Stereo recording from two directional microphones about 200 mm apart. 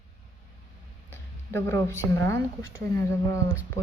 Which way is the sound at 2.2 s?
15° left (ahead or behind).